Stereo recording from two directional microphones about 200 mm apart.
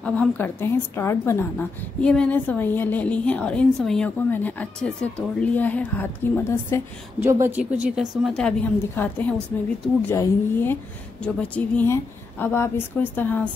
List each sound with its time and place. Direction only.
0.0 s a woman's voice: 5° left (ahead or behind)
7.2 s a woman's voice: 15° right (ahead or behind); by 13.5 s 10° left (ahead or behind)